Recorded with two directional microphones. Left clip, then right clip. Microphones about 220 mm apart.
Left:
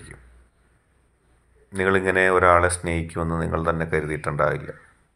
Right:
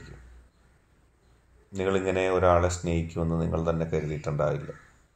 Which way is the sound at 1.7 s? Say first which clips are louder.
Left 6 dB; 5° left (ahead or behind).